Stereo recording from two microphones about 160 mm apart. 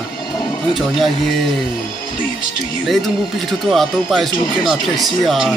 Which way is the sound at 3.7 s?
Centre (ahead or behind).